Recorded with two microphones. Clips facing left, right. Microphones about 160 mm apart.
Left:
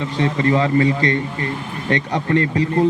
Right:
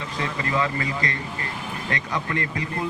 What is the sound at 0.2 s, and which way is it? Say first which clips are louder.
Speech: left 8 dB; 30° left (ahead or behind).